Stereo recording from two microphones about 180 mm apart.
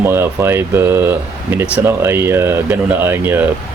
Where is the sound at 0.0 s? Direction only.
15° right (ahead or behind).